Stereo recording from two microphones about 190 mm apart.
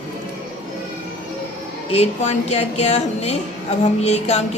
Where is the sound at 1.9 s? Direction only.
35° left (ahead or behind).